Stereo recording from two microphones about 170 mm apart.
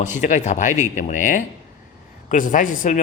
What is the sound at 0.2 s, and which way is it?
A man's voice, 45° left (ahead or behind).